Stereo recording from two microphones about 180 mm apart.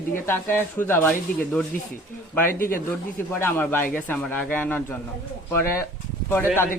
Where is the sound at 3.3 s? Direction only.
10° left (ahead or behind).